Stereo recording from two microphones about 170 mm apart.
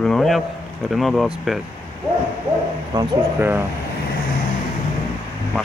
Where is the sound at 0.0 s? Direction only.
5° left (ahead or behind).